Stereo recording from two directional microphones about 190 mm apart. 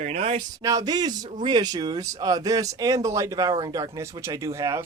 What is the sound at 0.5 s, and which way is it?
Speech, 20° right (ahead or behind).